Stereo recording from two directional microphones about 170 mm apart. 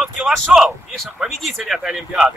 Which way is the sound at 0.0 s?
Centre (ahead or behind).